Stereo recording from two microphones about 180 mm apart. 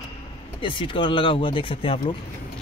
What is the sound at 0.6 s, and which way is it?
Speech, 30° left (ahead or behind).